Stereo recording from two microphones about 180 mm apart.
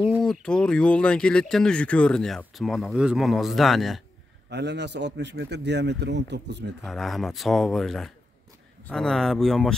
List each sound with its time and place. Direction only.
0.2 s speech: 5° left (ahead or behind)
4.5 s speech: 70° right (ahead or behind)
6.8 s speech: centre (ahead or behind)